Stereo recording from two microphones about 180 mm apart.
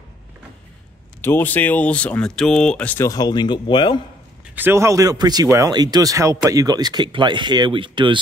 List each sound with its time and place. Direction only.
1.2 s speech: 10° left (ahead or behind)
4.6 s speech: 15° right (ahead or behind)